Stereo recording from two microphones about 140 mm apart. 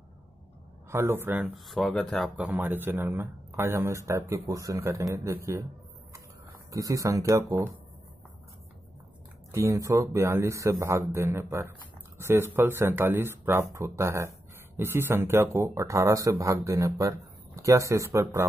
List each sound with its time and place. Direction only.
0.8 s speech: 15° right (ahead or behind)
1.5 s speech: centre (ahead or behind)
2.3 s speech: 10° right (ahead or behind)
6.7 s speech: 25° right (ahead or behind)
9.5 s speech: 20° right (ahead or behind)